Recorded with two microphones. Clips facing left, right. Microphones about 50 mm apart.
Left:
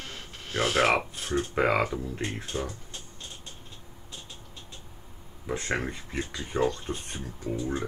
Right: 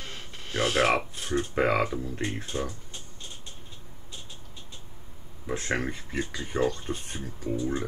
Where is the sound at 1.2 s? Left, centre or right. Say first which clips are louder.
Even; centre.